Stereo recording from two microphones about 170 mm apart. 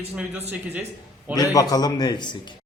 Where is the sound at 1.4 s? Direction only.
20° left (ahead or behind).